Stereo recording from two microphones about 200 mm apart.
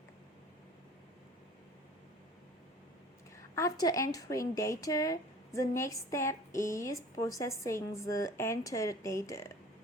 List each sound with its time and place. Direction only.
3.5 s a woman's voice: 15° left (ahead or behind)